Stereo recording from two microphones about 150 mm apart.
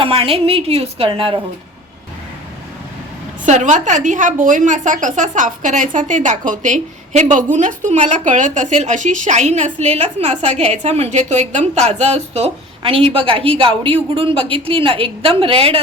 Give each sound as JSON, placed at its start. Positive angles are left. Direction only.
{"t": 0.0, "sound": "a woman's voice", "side_deg": -40}
{"t": 3.4, "sound": "a woman's voice", "side_deg": -55}